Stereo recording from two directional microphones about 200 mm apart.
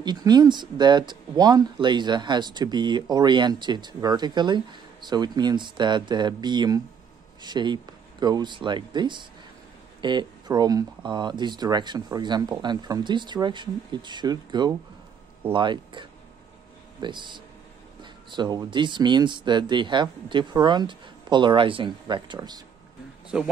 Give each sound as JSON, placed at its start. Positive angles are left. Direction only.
{"t": 0.0, "sound": "speech", "side_deg": -20}
{"t": 23.3, "sound": "a man's voice", "side_deg": -5}